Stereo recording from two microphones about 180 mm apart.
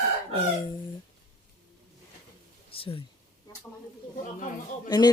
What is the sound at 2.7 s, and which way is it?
Speech, 30° left (ahead or behind).